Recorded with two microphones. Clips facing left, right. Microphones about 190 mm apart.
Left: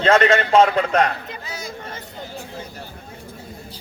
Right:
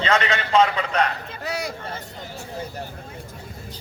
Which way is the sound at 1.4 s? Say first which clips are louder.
Right 5 dB; 65° right (ahead or behind).